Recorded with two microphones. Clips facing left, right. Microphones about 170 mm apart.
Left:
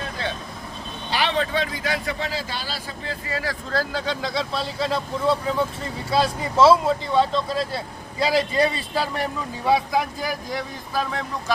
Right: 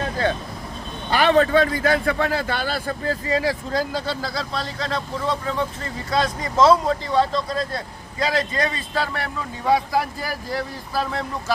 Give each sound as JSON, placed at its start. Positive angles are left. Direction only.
{"t": 1.1, "sound": "speech", "side_deg": -50}
{"t": 3.3, "sound": "a man's voice", "side_deg": -15}
{"t": 9.6, "sound": "speech", "side_deg": 0}